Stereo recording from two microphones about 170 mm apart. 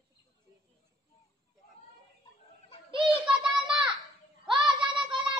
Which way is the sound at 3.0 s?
5° right (ahead or behind).